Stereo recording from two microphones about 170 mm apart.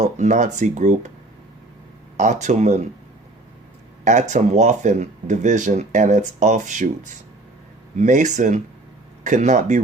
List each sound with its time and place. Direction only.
0.0 s speech: 45° right (ahead or behind)
2.1 s speech: 45° right (ahead or behind)
4.0 s speech: 45° right (ahead or behind)
7.9 s speech: 45° right (ahead or behind)